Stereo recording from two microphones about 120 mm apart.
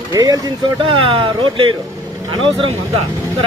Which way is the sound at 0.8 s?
45° right (ahead or behind).